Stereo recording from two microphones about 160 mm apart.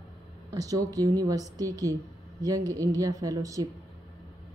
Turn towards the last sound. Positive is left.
turn(degrees=-20)  # may be behind; listen again after turning